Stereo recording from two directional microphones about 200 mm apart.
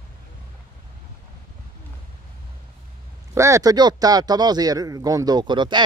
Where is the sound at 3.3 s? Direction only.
15° right (ahead or behind).